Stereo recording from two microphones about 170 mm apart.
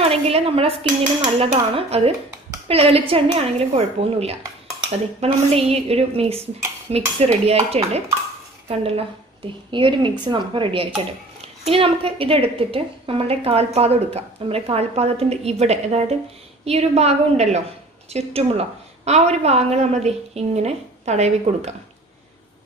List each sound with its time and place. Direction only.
0.1 s a woman's voice: 35° right (ahead or behind)